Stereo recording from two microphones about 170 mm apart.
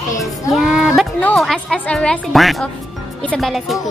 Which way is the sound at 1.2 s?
Centre (ahead or behind).